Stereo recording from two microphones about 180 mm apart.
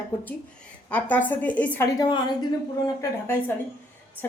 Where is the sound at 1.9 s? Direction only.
20° left (ahead or behind).